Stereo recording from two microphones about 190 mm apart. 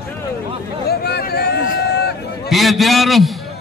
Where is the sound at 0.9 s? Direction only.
55° left (ahead or behind).